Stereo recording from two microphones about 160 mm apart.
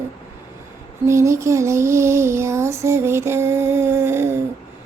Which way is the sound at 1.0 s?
20° right (ahead or behind).